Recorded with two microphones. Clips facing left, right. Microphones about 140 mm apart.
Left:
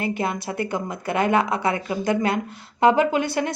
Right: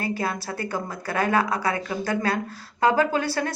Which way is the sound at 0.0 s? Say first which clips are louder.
Left 2 dB; 20° left (ahead or behind).